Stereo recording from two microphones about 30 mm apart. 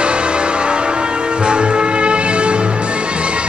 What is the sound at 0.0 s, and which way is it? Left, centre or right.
Change ringing, right.